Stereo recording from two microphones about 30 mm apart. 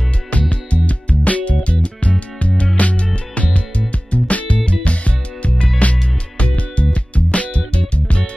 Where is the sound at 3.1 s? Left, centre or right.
Left.